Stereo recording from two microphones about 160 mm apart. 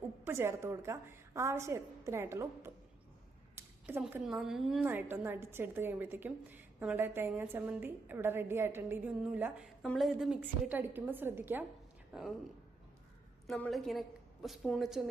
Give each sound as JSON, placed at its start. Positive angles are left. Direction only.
{"t": 0.3, "sound": "a woman's voice", "side_deg": -15}
{"t": 3.8, "sound": "a woman's voice", "side_deg": -10}
{"t": 4.9, "sound": "a woman's voice", "side_deg": -15}
{"t": 13.5, "sound": "a woman's voice", "side_deg": 0}